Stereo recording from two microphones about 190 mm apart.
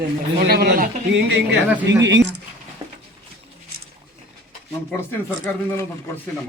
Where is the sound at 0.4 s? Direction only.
55° right (ahead or behind).